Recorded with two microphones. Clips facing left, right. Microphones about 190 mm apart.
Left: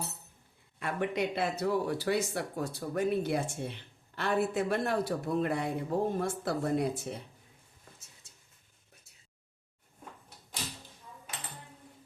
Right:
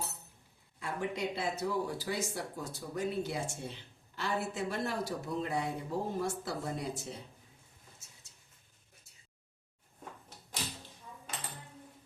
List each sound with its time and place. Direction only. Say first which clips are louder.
0.8 s speech: left 4 dB; 65° left (ahead or behind)